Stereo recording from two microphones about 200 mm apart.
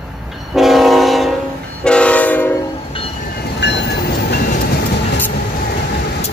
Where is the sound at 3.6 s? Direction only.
60° left (ahead or behind).